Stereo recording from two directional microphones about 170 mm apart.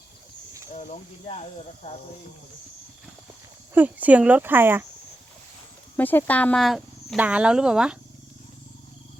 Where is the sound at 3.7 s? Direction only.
10° right (ahead or behind).